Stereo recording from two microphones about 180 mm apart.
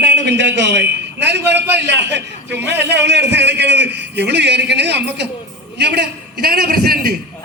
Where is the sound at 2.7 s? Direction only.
75° right (ahead or behind); by 7.1 s 55° right (ahead or behind).